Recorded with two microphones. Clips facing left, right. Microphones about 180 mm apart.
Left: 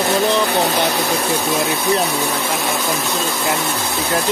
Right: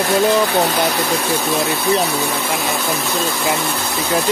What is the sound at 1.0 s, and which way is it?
Speech, 10° left (ahead or behind).